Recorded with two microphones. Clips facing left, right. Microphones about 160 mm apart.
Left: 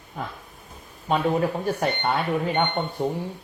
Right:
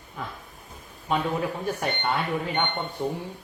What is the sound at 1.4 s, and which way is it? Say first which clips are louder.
Speech: left 4 dB; 40° left (ahead or behind).